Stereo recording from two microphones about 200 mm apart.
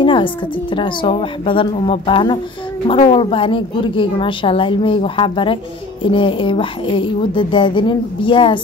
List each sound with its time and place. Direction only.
0.0 s a woman's voice: 25° left (ahead or behind)